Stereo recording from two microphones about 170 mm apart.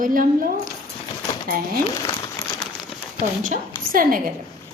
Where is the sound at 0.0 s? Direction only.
55° right (ahead or behind).